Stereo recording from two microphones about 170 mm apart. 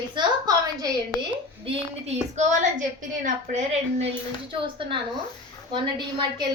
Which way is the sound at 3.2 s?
45° right (ahead or behind).